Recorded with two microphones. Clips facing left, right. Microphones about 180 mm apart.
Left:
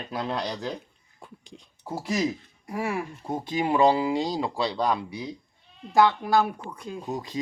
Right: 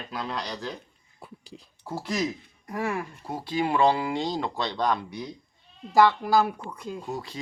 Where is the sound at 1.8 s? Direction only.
15° left (ahead or behind).